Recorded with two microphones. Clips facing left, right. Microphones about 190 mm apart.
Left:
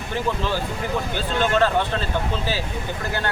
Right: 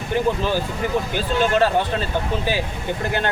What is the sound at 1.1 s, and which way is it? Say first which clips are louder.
Speech: right 1 dB; 15° right (ahead or behind).